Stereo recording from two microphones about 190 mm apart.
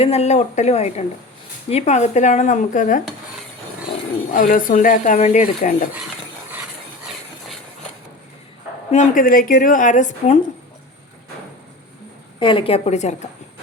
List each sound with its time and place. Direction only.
0.0 s speech: 35° left (ahead or behind)
4.3 s speech: 45° left (ahead or behind)
8.9 s speech: 40° left (ahead or behind)
12.4 s speech: 25° left (ahead or behind)